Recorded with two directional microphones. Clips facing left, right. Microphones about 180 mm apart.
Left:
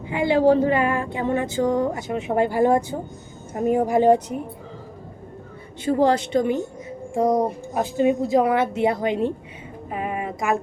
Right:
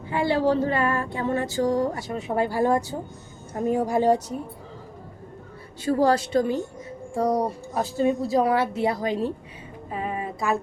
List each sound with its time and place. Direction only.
0.1 s speech: 15° left (ahead or behind)
5.8 s speech: 20° left (ahead or behind)
9.9 s a sound: 20° left (ahead or behind)